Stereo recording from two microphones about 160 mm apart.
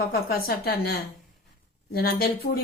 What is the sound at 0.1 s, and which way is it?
Speech, 70° left (ahead or behind).